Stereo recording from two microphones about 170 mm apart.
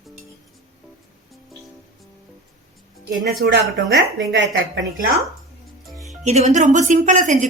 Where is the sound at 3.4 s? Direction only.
85° right.